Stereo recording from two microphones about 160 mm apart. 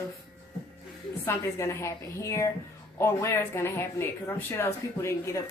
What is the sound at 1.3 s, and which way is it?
A woman's voice, 20° left (ahead or behind).